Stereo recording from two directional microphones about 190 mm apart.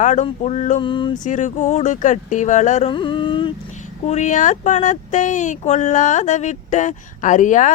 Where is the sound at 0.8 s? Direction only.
25° left (ahead or behind).